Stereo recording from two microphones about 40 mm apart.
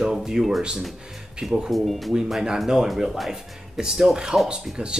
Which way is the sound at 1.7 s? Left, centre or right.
Centre.